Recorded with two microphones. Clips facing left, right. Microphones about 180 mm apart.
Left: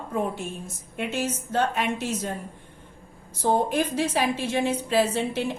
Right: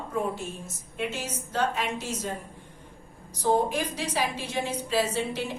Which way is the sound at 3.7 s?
55° left (ahead or behind).